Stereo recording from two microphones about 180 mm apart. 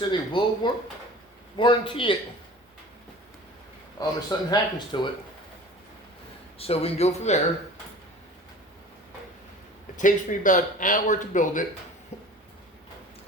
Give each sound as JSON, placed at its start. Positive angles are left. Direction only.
{"t": 0.1, "sound": "speech", "side_deg": 25}
{"t": 4.0, "sound": "speech", "side_deg": 20}
{"t": 6.6, "sound": "speech", "side_deg": 35}
{"t": 10.0, "sound": "speech", "side_deg": 45}
{"t": 12.1, "sound": "a sound", "side_deg": 40}